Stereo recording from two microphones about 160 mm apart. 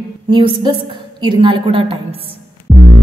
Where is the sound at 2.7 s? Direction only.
15° right (ahead or behind).